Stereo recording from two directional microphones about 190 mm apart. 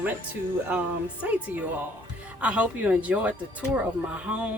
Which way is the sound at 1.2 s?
10° right (ahead or behind).